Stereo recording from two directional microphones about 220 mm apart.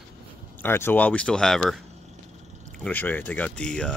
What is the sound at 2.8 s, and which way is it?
Speech, 10° left (ahead or behind).